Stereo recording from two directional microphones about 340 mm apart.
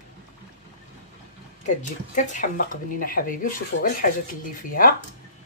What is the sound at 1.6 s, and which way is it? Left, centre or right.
Speech, left.